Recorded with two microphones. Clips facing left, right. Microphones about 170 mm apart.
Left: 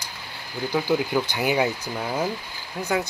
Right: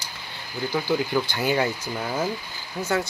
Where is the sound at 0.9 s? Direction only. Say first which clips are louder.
Even; 15° left (ahead or behind).